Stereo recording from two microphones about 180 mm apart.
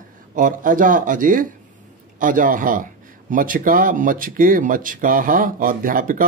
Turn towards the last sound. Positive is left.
turn(degrees=-50)  # may be behind; listen again after turning